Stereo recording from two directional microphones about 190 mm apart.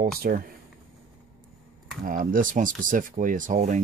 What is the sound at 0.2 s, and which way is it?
Speech, 50° right (ahead or behind).